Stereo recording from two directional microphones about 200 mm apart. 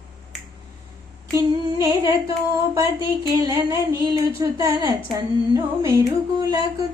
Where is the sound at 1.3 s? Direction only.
15° right (ahead or behind).